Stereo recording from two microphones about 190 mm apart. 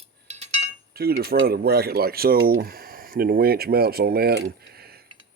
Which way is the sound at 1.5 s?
55° right (ahead or behind).